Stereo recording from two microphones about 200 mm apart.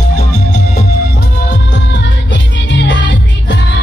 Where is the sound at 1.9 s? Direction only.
65° left (ahead or behind).